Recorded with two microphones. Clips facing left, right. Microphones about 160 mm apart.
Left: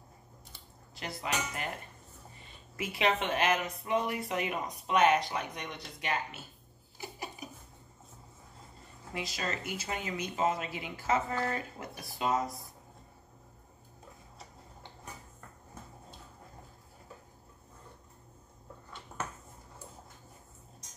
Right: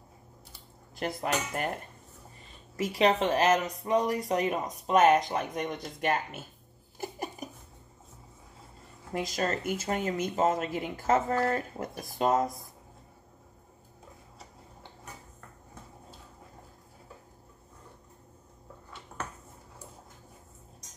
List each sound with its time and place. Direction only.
0.9 s speech: 50° right (ahead or behind)
2.8 s speech: 40° right (ahead or behind)
7.0 s a sound: 45° right (ahead or behind)
9.1 s speech: 45° right (ahead or behind)